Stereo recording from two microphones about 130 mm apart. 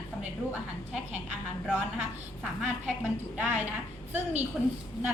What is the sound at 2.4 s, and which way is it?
Speech, centre (ahead or behind).